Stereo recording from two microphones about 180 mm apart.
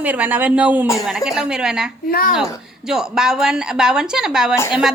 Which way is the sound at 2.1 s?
55° left (ahead or behind).